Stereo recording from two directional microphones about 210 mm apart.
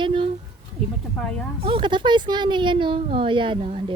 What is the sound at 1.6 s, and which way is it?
A woman's voice, 25° right (ahead or behind).